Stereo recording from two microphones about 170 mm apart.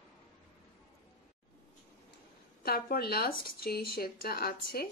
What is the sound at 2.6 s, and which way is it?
Speech, 60° left (ahead or behind).